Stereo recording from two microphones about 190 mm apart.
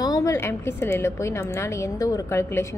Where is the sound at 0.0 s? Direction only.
15° left (ahead or behind).